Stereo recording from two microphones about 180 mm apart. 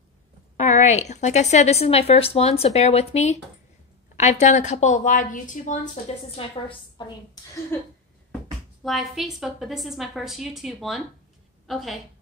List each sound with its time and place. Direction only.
0.6 s a woman's voice: 40° left (ahead or behind)
7.7 s a sound: 10° left (ahead or behind)
8.8 s a woman's voice: centre (ahead or behind)